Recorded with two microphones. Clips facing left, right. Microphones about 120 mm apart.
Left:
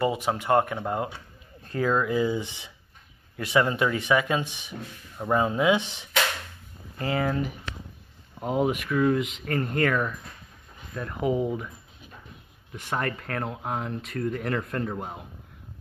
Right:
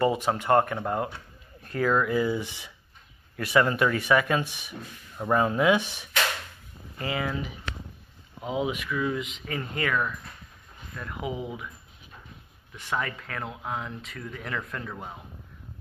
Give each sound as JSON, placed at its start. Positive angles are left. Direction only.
{"t": 0.0, "sound": "speech", "side_deg": 15}
{"t": 7.0, "sound": "speech", "side_deg": 40}
{"t": 11.3, "sound": "speech", "side_deg": 45}
{"t": 12.7, "sound": "speech", "side_deg": 50}